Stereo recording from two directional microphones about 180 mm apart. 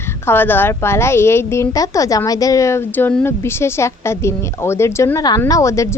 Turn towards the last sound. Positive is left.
turn(degrees=15)  # may be behind; listen again after turning